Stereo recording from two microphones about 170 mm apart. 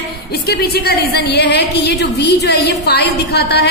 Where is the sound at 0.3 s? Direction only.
70° left (ahead or behind).